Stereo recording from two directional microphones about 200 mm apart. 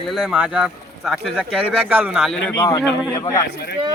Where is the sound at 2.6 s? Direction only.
15° left (ahead or behind).